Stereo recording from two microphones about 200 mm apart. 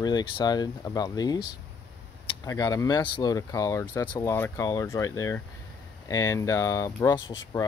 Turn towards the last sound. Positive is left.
turn(degrees=20)  # may be behind; listen again after turning